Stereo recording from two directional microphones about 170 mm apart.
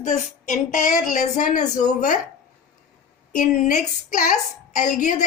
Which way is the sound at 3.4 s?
45° left (ahead or behind).